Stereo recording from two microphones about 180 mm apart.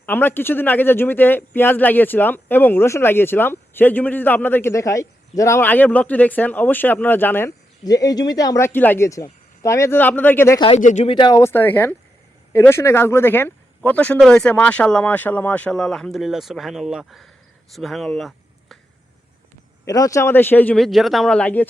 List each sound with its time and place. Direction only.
0.0 s speech: 10° left (ahead or behind)
10.8 s speech: 45° left (ahead or behind)
11.1 s speech: 25° left (ahead or behind); by 18.8 s centre (ahead or behind)
19.8 s speech: 20° left (ahead or behind)